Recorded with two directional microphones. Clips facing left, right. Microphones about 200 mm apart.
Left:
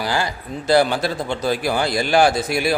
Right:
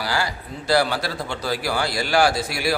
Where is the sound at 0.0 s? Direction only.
20° left (ahead or behind).